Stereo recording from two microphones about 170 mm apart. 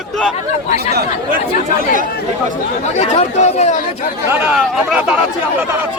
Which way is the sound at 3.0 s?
40° left (ahead or behind).